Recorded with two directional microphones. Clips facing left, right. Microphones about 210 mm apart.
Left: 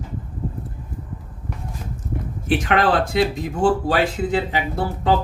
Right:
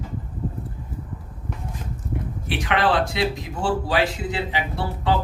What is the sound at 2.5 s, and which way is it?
A man's voice, 45° left (ahead or behind).